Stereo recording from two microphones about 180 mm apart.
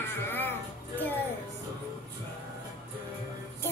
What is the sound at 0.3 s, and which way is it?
Music, 10° left (ahead or behind).